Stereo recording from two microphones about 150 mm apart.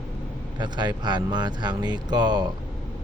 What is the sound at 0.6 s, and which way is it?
Speech, 30° right (ahead or behind).